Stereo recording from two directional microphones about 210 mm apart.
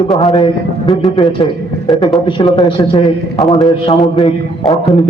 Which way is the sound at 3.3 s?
Centre (ahead or behind).